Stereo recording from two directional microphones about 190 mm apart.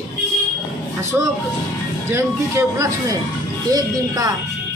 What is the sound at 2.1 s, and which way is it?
Speech, 15° right (ahead or behind).